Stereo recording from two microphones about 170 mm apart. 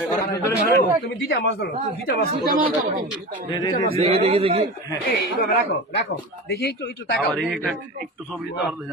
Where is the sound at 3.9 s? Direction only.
35° right (ahead or behind).